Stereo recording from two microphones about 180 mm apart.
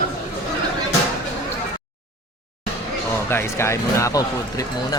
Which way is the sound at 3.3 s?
15° left (ahead or behind).